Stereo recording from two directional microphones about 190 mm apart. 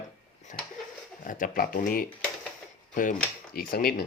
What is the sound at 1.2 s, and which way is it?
Speech, 45° left (ahead or behind).